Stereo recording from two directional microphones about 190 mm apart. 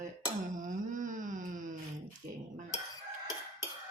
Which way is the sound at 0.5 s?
45° right (ahead or behind).